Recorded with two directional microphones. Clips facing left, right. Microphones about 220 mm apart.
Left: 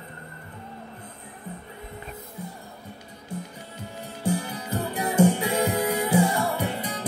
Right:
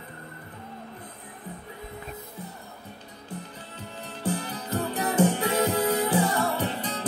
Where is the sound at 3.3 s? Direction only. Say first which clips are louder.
Left 3 dB; 10° left (ahead or behind).